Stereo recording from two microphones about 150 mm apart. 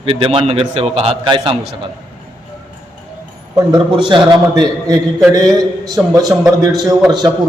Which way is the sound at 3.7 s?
30° right (ahead or behind).